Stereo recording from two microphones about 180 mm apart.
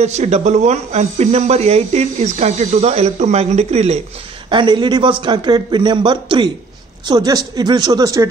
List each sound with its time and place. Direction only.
0.0 s speech: 40° right (ahead or behind)
4.5 s a man's voice: 25° right (ahead or behind)